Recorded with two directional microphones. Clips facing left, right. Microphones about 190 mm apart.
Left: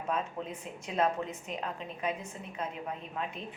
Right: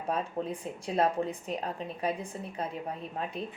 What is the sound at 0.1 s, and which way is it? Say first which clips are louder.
A woman's voice: right 3 dB; 35° right (ahead or behind).